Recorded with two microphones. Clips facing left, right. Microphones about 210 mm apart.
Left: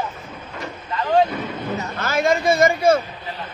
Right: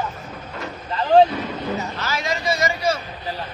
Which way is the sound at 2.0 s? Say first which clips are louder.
Left 6 dB; 50° left (ahead or behind).